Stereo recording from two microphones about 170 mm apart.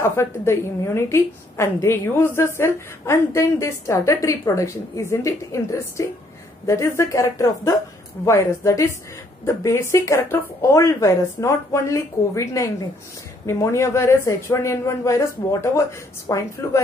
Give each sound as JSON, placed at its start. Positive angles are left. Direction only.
{"t": 0.0, "sound": "a woman's voice", "side_deg": 15}